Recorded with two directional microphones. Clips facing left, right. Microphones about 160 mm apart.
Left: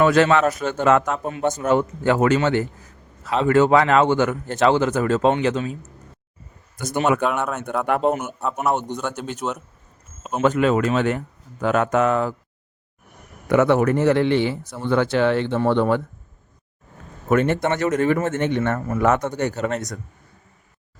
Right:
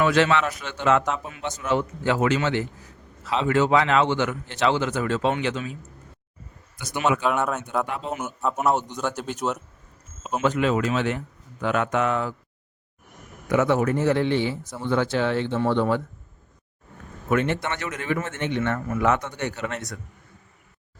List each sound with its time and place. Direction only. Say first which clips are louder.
0.0 s a man's voice: left 4 dB; 45° left (ahead or behind)
6.7 s a man's voice: left 4 dB; 45° left (ahead or behind)
7.3 s a man's voice: even; centre (ahead or behind)
7.9 s a man's voice: left 11 dB; 60° left (ahead or behind)
8.4 s a man's voice: even; centre (ahead or behind)
10.4 s a man's voice: left 4 dB; 50° left (ahead or behind)
13.5 s a man's voice: left 4 dB; 60° left (ahead or behind)
17.2 s a man's voice: left 5 dB; 45° left (ahead or behind)